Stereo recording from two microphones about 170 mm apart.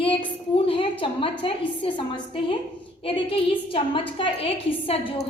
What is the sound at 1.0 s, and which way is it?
A woman's voice, 30° left (ahead or behind).